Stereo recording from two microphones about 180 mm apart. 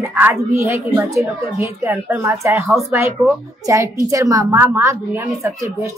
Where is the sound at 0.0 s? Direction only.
10° right (ahead or behind).